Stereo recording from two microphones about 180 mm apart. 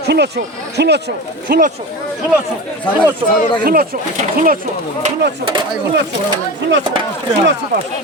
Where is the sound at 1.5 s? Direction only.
50° right (ahead or behind).